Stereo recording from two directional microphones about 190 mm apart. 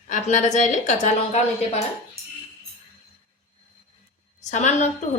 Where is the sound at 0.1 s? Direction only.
40° left (ahead or behind).